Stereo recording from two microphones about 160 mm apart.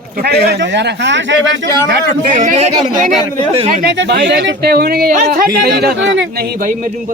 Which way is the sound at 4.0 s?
90° right.